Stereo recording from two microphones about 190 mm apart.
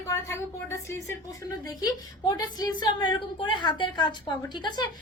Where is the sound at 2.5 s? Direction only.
20° left (ahead or behind).